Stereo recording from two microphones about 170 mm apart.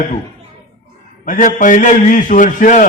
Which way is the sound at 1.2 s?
50° left (ahead or behind).